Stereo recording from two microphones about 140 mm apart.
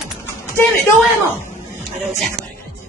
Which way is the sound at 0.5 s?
20° left (ahead or behind).